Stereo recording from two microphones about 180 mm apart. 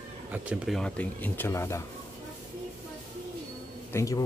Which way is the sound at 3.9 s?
15° left (ahead or behind).